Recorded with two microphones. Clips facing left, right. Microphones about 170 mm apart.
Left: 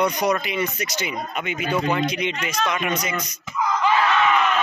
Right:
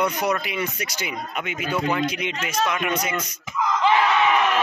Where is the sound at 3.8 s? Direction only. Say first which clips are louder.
Right 1 dB; 20° right (ahead or behind).